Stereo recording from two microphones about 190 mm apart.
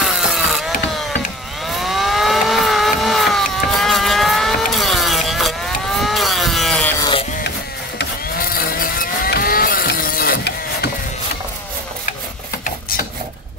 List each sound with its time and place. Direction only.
0.0 s ratchet: centre (ahead or behind)
1.8 s vehicle: centre (ahead or behind)
8.0 s mechanisms: 50° left (ahead or behind)